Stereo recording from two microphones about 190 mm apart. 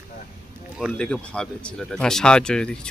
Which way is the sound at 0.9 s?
5° left (ahead or behind).